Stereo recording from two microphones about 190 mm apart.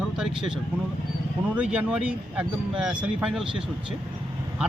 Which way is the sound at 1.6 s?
5° right (ahead or behind).